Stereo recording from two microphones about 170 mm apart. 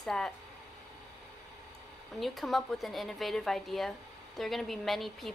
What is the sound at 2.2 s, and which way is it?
A woman's voice, centre (ahead or behind).